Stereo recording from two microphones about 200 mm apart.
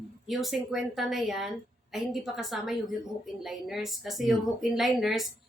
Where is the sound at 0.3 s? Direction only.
Centre (ahead or behind).